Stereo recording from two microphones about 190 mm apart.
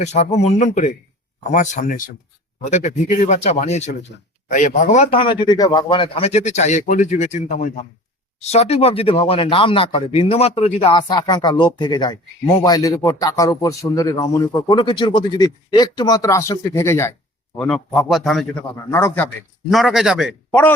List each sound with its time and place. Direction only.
0.0 s speech: 35° left (ahead or behind)
5.2 s speech: 25° left (ahead or behind)
17.6 s a man's voice: 5° left (ahead or behind)
18.9 s a man's voice: 15° left (ahead or behind); by 20.3 s centre (ahead or behind)
20.5 s speech: 10° left (ahead or behind)